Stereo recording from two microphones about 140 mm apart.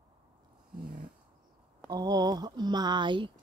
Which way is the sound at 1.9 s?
25° right (ahead or behind).